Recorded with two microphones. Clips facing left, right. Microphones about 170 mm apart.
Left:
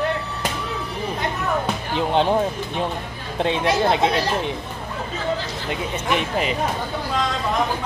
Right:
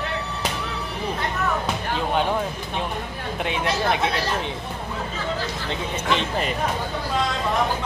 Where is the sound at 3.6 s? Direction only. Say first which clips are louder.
Left 4 dB; 20° left (ahead or behind).